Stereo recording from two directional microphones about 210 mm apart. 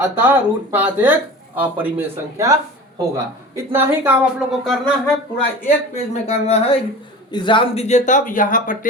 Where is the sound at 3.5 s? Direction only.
10° right (ahead or behind).